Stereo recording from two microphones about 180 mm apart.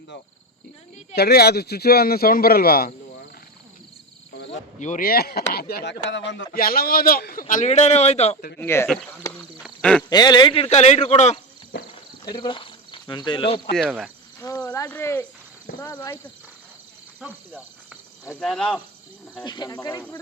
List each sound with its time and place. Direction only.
1.1 s speech: 60° left (ahead or behind)
4.4 s speech: 40° left (ahead or behind); by 6.4 s 90° left
6.5 s a man's voice: 55° left (ahead or behind); by 8.4 s 35° left (ahead or behind)
8.5 s speech: 15° left (ahead or behind)
9.6 s duck: 5° left (ahead or behind)
10.0 s speech: 25° left (ahead or behind); by 11.3 s 40° left (ahead or behind)
11.7 s clip-clop: 80° left
12.2 s speech: 25° left (ahead or behind)
14.6 s speech: 10° left (ahead or behind)
18.3 s cricket: 5° left (ahead or behind)
19.5 s speech: 25° left (ahead or behind)